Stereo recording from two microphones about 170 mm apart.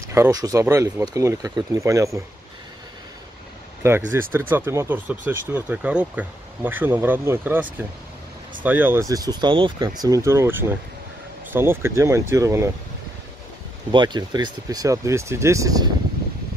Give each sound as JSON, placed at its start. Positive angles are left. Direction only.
{"t": 0.1, "sound": "speech", "side_deg": -20}
{"t": 4.1, "sound": "speech", "side_deg": -15}
{"t": 8.6, "sound": "speech", "side_deg": -10}
{"t": 13.9, "sound": "speech", "side_deg": -25}